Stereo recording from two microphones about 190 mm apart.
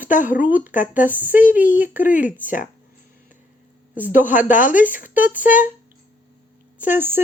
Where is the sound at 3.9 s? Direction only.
10° right (ahead or behind).